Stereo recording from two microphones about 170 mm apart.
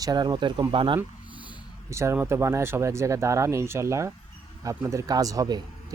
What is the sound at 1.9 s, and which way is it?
Speech, 15° right (ahead or behind).